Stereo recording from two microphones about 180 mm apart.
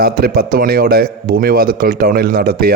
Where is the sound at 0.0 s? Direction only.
55° right (ahead or behind).